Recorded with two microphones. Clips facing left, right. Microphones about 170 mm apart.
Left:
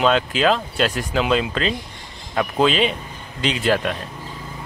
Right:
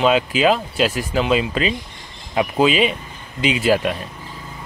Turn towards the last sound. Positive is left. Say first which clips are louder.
# right 3 dB
turn(degrees=-10)  # may be behind; listen again after turning